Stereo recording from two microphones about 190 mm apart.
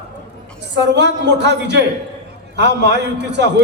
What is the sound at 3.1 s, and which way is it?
Speech, 65° right (ahead or behind).